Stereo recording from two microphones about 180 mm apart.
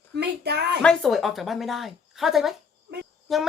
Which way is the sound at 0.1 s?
65° right (ahead or behind).